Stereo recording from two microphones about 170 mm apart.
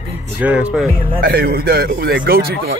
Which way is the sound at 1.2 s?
65° right (ahead or behind).